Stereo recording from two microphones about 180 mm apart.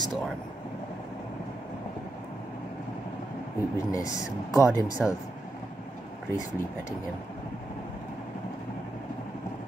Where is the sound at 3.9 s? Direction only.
15° left (ahead or behind).